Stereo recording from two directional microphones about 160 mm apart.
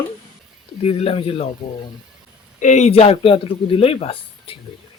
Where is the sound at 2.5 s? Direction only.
50° left (ahead or behind).